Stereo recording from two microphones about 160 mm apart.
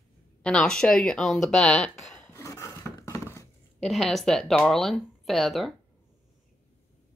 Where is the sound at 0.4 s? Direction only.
5° left (ahead or behind).